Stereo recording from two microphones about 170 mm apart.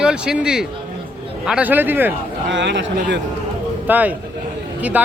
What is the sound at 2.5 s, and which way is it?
Speech, 90° right.